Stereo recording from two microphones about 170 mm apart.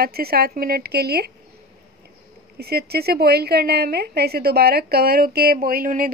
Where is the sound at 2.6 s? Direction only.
70° right (ahead or behind).